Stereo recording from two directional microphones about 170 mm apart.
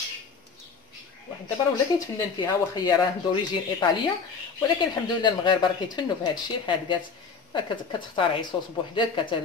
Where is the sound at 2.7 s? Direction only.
25° left (ahead or behind).